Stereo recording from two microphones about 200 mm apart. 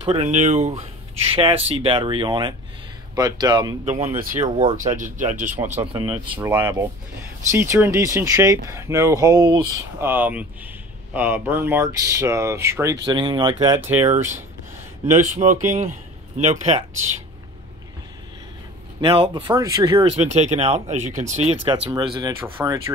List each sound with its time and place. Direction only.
0.0 s speech: 25° right (ahead or behind)
4.4 s speech: 35° right (ahead or behind)
5.9 s speech: 20° right (ahead or behind)
6.3 s speech: 10° right (ahead or behind)
15.1 s speech: 40° right (ahead or behind)
18.9 s speech: 25° right (ahead or behind)